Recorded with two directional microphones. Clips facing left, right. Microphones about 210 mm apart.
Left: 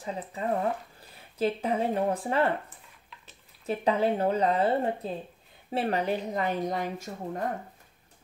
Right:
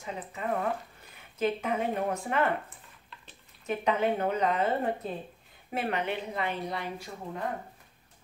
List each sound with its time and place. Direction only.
0.0 s speech: 35° left (ahead or behind)
3.6 s speech: 35° left (ahead or behind)